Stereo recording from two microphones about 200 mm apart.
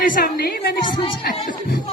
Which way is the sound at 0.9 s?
25° left (ahead or behind).